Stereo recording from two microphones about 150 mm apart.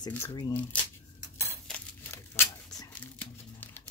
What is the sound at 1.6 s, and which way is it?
Crumpling, 10° left (ahead or behind).